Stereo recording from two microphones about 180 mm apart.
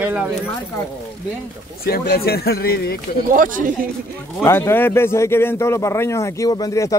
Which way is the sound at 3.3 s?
50° right (ahead or behind).